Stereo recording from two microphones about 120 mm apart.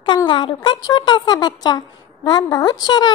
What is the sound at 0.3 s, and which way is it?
A child's voice, 40° left (ahead or behind).